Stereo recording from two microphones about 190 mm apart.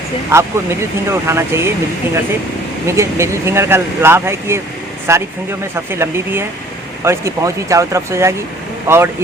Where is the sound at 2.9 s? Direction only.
15° right (ahead or behind).